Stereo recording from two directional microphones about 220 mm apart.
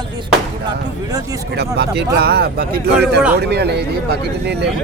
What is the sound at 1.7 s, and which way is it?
Speech, 50° right (ahead or behind).